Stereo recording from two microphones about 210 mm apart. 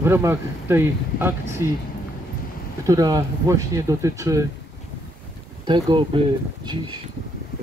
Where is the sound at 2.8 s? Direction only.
15° right (ahead or behind).